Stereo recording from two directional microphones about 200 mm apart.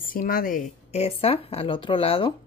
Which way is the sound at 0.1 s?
45° left (ahead or behind).